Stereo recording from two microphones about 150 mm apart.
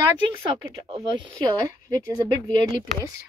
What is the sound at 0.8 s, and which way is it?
Speech, 30° right (ahead or behind).